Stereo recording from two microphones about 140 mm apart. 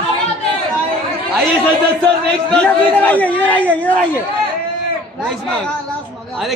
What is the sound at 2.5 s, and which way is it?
Speech, 10° left (ahead or behind).